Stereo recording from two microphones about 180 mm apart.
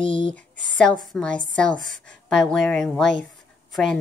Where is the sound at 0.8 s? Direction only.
5° left (ahead or behind).